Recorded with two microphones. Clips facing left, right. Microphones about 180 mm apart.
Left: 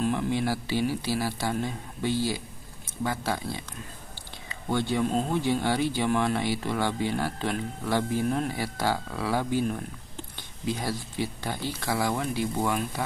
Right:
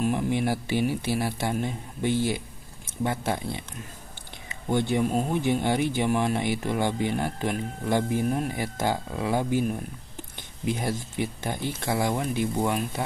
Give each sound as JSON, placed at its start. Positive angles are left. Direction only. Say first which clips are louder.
{"t": 0.0, "sound": "speech", "louder": "right 1 dB", "side_deg": -15}
{"t": 4.6, "sound": "speech", "louder": "right 2 dB", "side_deg": -20}